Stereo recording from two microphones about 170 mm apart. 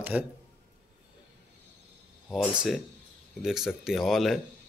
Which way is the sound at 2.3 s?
Centre (ahead or behind).